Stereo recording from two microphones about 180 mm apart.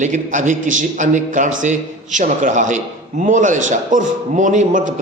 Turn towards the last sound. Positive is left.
turn(degrees=-45)  # may be behind; listen again after turning